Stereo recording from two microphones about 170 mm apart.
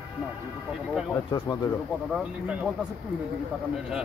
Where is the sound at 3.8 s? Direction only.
5° right (ahead or behind).